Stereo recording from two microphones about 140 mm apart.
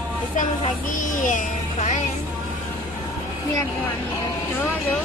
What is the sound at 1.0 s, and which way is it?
Speech, 65° left (ahead or behind).